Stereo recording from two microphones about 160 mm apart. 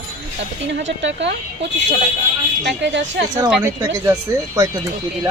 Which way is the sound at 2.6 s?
90° right.